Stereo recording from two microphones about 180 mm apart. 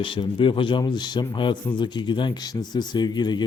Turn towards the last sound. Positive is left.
turn(degrees=25)  # may be behind; listen again after turning